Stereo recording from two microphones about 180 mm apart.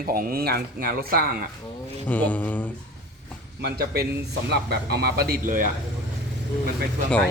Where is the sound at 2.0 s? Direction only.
10° left (ahead or behind).